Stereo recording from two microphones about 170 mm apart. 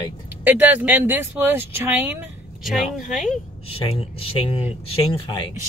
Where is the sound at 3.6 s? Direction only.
35° left (ahead or behind).